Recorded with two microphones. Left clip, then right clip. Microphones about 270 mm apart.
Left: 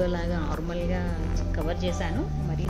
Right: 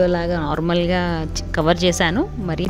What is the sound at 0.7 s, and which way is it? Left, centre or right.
Speech, right.